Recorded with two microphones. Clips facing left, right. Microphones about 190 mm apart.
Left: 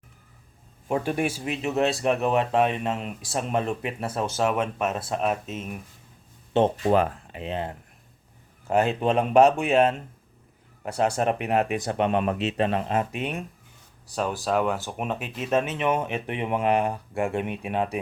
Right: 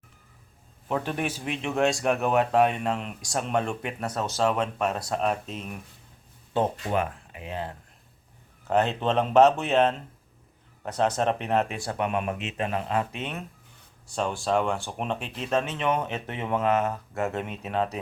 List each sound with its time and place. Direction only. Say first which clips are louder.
0.9 s speech: left 3 dB; 10° left (ahead or behind)
6.8 s speech: left 6 dB; 35° left (ahead or behind)
8.6 s speech: left 2 dB; 10° left (ahead or behind); by 12.8 s 35° left (ahead or behind)
12.9 s speech: left 2 dB; 20° left (ahead or behind)
14.4 s speech: left 1 dB; 5° left (ahead or behind)